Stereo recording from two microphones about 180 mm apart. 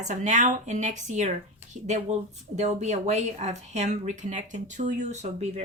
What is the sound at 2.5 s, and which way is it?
Speech, 40° right (ahead or behind).